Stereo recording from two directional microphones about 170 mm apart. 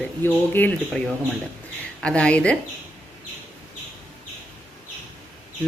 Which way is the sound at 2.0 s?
5° left (ahead or behind).